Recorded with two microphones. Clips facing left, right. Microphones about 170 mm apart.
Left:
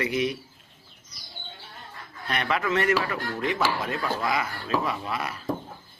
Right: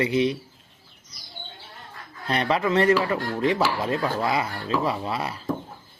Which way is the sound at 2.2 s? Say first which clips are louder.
Right 4 dB; 30° right (ahead or behind).